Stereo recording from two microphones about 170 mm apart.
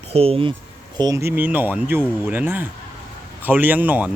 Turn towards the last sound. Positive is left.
turn(degrees=-10)  # may be behind; listen again after turning